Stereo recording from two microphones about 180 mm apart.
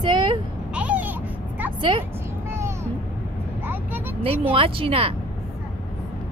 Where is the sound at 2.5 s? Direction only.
15° right (ahead or behind).